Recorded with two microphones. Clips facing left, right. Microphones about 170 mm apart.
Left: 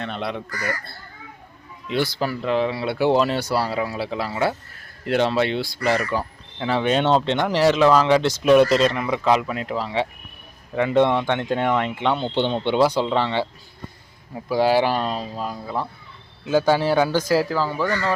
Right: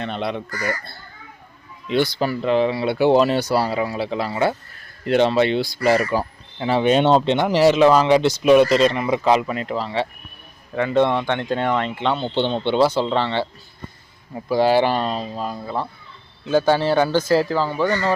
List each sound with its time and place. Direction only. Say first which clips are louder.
0.0 s speech: right 3 dB; centre (ahead or behind)
1.9 s speech: right 3 dB; 5° left (ahead or behind)
5.8 s speech: right 4 dB; 40° right (ahead or behind)
6.6 s speech: right 3 dB; 25° right (ahead or behind)
6.8 s a man's voice: right 4 dB; 15° right (ahead or behind); by 15.3 s 5° left (ahead or behind)
16.5 s a man's voice: right 1 dB; 10° left (ahead or behind)
17.8 s speech: right 3 dB; 25° right (ahead or behind)